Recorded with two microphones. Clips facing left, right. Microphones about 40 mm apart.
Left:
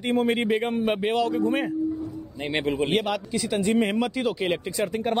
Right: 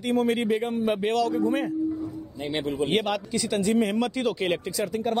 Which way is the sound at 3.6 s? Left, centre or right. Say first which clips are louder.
Left 1 dB; left.